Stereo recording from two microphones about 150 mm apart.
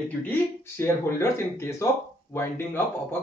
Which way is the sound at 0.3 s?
15° left (ahead or behind).